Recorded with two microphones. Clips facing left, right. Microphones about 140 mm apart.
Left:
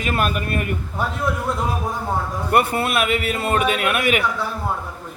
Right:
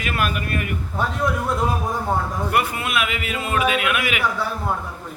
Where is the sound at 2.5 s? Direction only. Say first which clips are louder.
Left 5 dB; 40° left (ahead or behind).